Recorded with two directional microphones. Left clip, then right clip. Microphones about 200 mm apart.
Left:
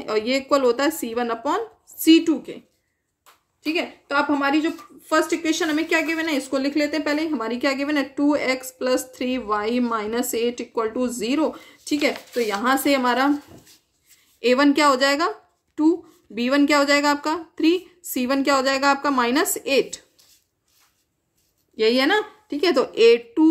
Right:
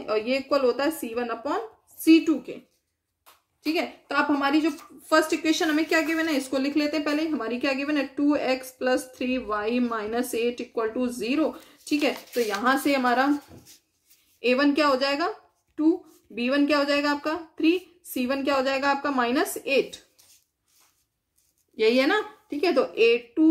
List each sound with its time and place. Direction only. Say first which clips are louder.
0.0 s a woman's voice: left 3 dB; 50° left (ahead or behind)
3.6 s a woman's voice: left 2 dB; 15° left (ahead or behind); by 13.3 s 35° left (ahead or behind)
14.4 s a woman's voice: left 5 dB; 45° left (ahead or behind)
21.7 s a woman's voice: left 3 dB; 25° left (ahead or behind); by 23.5 s 45° left (ahead or behind)